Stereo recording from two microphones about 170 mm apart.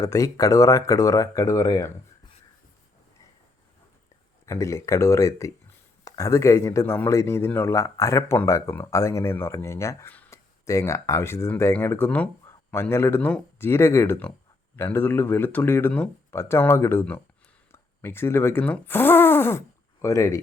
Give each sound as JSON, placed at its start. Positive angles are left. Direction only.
{"t": 0.0, "sound": "speech", "side_deg": 20}
{"t": 4.4, "sound": "speech", "side_deg": 15}